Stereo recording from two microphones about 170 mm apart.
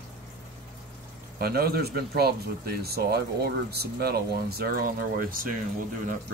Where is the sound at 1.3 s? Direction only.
65° right (ahead or behind).